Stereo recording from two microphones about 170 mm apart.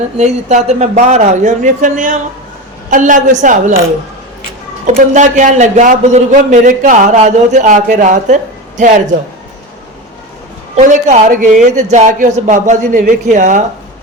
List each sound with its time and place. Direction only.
0.2 s a man's voice: 40° right (ahead or behind)
5.1 s a man's voice: 45° right (ahead or behind)
10.8 s a man's voice: 45° right (ahead or behind)